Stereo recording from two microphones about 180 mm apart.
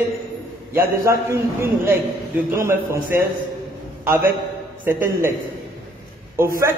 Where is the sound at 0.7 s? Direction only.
15° right (ahead or behind).